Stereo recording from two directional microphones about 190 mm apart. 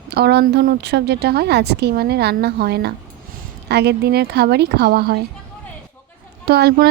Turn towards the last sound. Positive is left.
turn(degrees=-55)  # may be behind; listen again after turning